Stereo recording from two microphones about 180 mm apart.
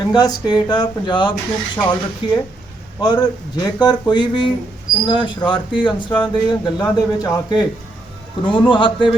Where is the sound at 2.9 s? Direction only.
20° left (ahead or behind).